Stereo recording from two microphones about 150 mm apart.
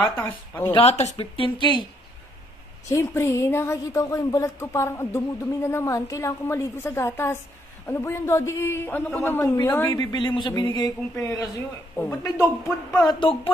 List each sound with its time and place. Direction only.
0.0 s speech: 15° left (ahead or behind)
0.7 s speech: 45° left (ahead or behind)
2.9 s speech: 20° left (ahead or behind)
9.8 s speech: 30° left (ahead or behind)
12.9 s speech: 30° left (ahead or behind)